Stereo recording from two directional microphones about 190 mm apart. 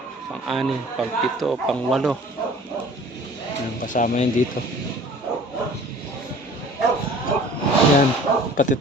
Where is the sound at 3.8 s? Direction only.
40° left (ahead or behind).